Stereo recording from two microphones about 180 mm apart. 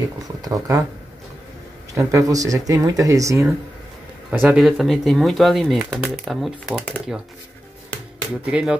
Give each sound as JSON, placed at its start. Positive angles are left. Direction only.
{"t": 0.4, "sound": "speech", "side_deg": -15}
{"t": 2.0, "sound": "speech", "side_deg": -15}
{"t": 8.5, "sound": "speech", "side_deg": -5}